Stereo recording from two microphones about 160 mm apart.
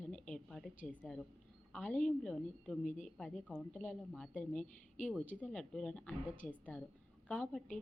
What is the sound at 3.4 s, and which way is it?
A woman's voice, 5° left (ahead or behind).